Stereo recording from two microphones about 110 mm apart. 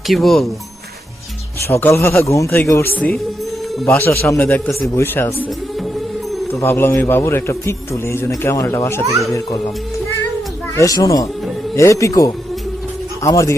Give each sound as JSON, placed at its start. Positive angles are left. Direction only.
{"t": 0.1, "sound": "speech", "side_deg": 0}
{"t": 1.6, "sound": "a man's voice", "side_deg": 25}
{"t": 2.9, "sound": "a man's voice", "side_deg": 15}
{"t": 4.9, "sound": "a man's voice", "side_deg": 25}
{"t": 6.5, "sound": "a man's voice", "side_deg": 20}
{"t": 10.8, "sound": "a man's voice", "side_deg": 30}